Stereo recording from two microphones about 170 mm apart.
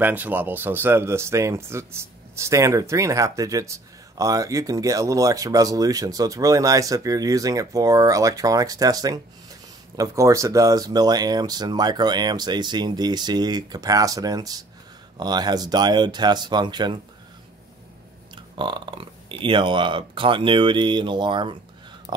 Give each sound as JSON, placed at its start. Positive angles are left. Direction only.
{"t": 0.0, "sound": "speech", "side_deg": -10}
{"t": 18.3, "sound": "speech", "side_deg": -30}